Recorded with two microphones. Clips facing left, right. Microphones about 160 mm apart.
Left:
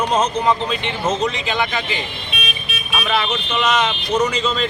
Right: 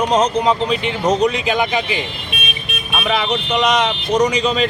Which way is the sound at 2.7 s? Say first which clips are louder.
Right 2 dB; 55° right (ahead or behind).